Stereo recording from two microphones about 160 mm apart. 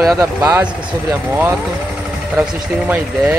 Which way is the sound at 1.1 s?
15° right (ahead or behind).